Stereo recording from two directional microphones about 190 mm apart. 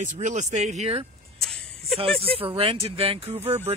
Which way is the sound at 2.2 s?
30° right (ahead or behind).